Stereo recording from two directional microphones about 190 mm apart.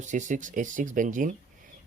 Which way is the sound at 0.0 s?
40° right (ahead or behind).